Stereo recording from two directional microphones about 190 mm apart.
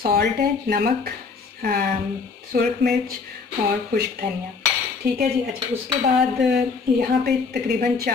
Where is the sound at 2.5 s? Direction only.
55° right (ahead or behind).